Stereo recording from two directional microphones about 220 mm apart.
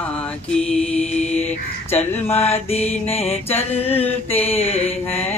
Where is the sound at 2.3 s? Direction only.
30° left (ahead or behind).